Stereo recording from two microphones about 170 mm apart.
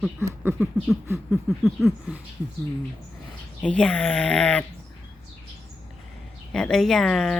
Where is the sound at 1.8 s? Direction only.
Centre (ahead or behind).